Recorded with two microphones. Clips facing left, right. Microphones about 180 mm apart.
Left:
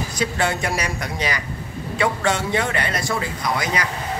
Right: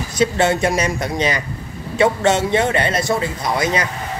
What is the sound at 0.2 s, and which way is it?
Speech, 25° right (ahead or behind).